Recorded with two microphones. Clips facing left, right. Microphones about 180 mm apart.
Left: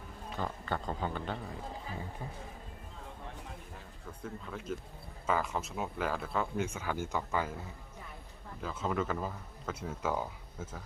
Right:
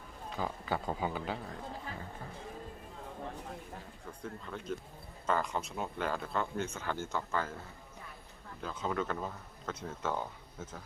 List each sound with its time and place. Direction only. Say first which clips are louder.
0.3 s speech: right 1 dB; 5° right (ahead or behind)
4.2 s speech: left 1 dB; 5° left (ahead or behind)
8.6 s speech: left 1 dB; centre (ahead or behind)